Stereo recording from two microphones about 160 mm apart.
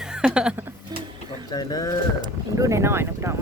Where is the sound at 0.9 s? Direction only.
25° right (ahead or behind).